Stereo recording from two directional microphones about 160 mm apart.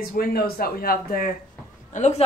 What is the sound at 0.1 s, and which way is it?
Speech, 70° left (ahead or behind).